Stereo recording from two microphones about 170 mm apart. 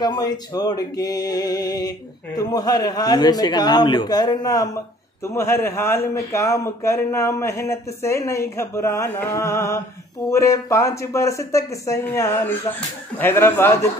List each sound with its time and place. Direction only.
0.0 s a man's voice: 25° left (ahead or behind)